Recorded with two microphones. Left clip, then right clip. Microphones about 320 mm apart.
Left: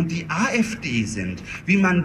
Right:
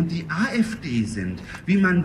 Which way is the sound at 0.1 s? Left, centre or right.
Centre.